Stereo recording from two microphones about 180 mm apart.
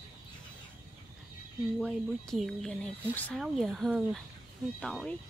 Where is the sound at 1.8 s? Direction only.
Centre (ahead or behind).